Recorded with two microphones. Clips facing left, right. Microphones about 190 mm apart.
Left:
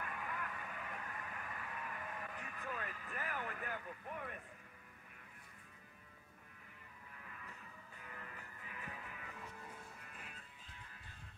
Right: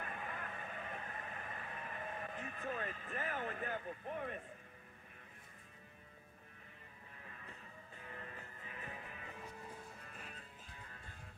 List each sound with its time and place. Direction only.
0.0 s vehicle: 30° right (ahead or behind)
7.2 s music: 30° right (ahead or behind)